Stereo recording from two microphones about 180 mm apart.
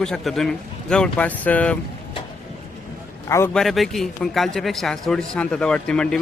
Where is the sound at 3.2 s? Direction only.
15° left (ahead or behind).